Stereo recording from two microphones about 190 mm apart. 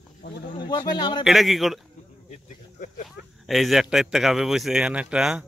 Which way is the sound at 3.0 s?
Centre (ahead or behind).